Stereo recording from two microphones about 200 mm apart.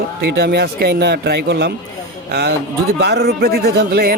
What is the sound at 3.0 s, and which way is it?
Speech, 50° right (ahead or behind).